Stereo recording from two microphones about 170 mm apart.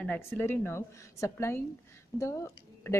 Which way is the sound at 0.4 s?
15° left (ahead or behind).